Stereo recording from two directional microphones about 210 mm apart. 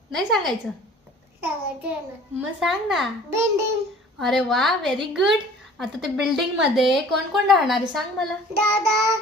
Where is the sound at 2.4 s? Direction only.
Centre (ahead or behind).